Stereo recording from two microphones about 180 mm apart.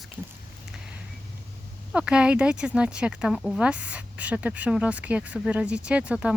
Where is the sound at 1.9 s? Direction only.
5° right (ahead or behind).